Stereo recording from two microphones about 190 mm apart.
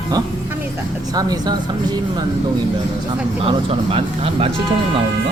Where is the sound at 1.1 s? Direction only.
20° right (ahead or behind).